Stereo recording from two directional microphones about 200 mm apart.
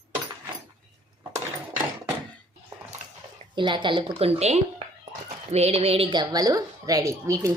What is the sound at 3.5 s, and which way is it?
A woman's voice, 25° right (ahead or behind).